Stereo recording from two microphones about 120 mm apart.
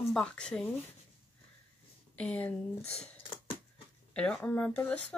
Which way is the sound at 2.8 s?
60° left (ahead or behind).